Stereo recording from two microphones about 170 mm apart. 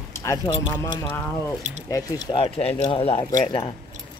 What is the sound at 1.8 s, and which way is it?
Speech, 20° left (ahead or behind).